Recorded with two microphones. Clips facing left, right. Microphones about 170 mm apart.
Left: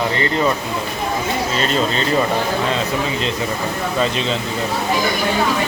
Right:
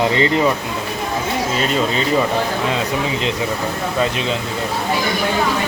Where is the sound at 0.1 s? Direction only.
20° right (ahead or behind).